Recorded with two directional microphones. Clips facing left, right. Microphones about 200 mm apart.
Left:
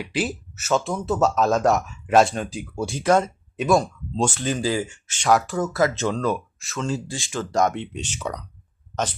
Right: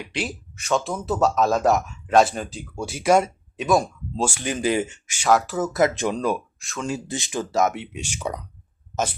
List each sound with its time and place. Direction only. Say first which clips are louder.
0.0 s speech: left 4 dB; 5° left (ahead or behind)
2.5 s speech: left 4 dB; 10° left (ahead or behind)
2.8 s speech: right 1 dB; 10° right (ahead or behind)
5.1 s speech: even; 5° right (ahead or behind)
5.7 s speech: right 2 dB; 15° right (ahead or behind)
6.6 s speech: left 2 dB; centre (ahead or behind)
6.8 s speech: even; 15° right (ahead or behind)
7.5 s speech: left 1 dB; 5° right (ahead or behind)